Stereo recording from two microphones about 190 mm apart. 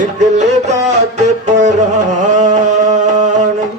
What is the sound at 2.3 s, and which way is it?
Music, 40° right (ahead or behind).